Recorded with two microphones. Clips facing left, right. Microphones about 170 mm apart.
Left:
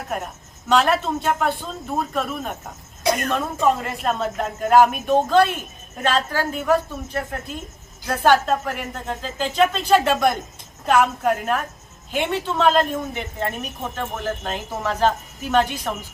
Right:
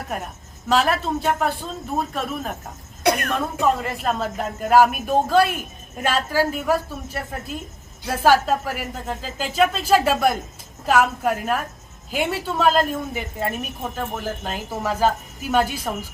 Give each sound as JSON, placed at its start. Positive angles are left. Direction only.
{"t": 0.7, "sound": "speech", "side_deg": 0}
{"t": 3.0, "sound": "a woman's voice", "side_deg": -65}
{"t": 3.6, "sound": "a woman's voice", "side_deg": 0}